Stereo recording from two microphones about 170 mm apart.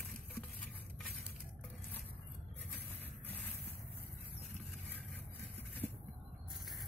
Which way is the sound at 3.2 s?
10° left (ahead or behind).